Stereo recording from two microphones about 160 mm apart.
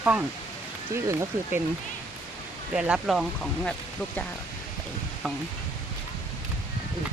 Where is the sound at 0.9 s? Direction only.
15° right (ahead or behind).